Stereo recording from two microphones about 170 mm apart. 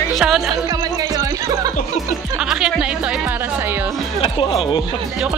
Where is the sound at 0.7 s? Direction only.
20° right (ahead or behind).